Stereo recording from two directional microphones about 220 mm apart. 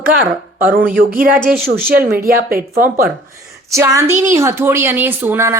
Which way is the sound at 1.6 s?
45° right (ahead or behind).